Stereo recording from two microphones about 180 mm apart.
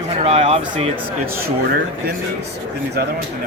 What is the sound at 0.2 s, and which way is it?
Speech, 35° right (ahead or behind).